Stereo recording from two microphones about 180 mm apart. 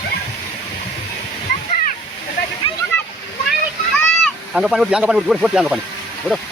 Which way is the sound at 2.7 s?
35° left (ahead or behind).